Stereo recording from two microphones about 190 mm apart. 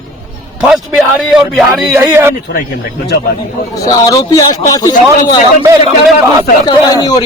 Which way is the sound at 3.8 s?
20° left (ahead or behind).